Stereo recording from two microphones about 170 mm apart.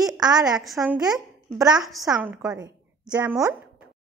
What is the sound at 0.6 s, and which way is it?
Speech, 5° right (ahead or behind).